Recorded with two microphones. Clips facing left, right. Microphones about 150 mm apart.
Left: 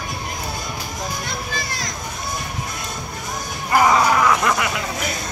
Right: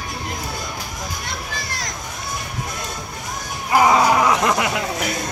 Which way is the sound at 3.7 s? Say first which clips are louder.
Right 1 dB; 15° right (ahead or behind).